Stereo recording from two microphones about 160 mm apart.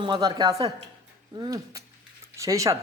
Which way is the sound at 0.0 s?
25° right (ahead or behind).